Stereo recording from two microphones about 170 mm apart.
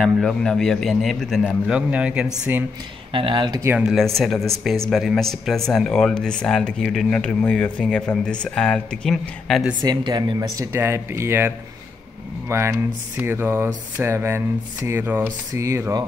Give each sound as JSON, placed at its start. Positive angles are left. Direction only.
{"t": 0.0, "sound": "speech", "side_deg": 5}
{"t": 3.1, "sound": "speech", "side_deg": -30}
{"t": 3.7, "sound": "speech", "side_deg": -5}
{"t": 9.8, "sound": "speech", "side_deg": -25}
{"t": 10.7, "sound": "speech", "side_deg": -15}